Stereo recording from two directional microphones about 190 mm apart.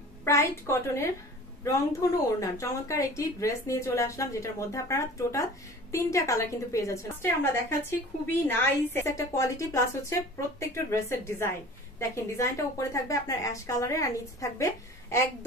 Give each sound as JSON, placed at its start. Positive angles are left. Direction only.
{"t": 0.2, "sound": "speech", "side_deg": 15}